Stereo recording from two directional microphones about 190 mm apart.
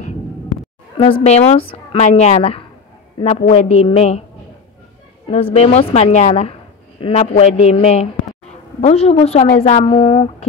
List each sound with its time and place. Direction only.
0.9 s a woman's voice: 25° left (ahead or behind)
5.3 s a woman's voice: 30° left (ahead or behind)